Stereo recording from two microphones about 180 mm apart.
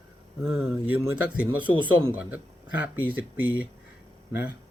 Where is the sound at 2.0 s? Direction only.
10° right (ahead or behind).